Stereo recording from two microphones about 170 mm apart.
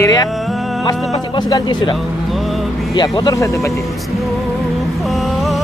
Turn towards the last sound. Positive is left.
turn(degrees=0)  # may be behind; listen again after turning